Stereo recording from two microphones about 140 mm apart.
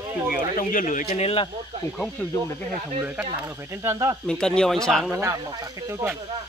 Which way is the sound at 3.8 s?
25° right (ahead or behind).